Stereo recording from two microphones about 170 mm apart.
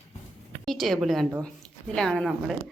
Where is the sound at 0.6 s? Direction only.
Centre (ahead or behind).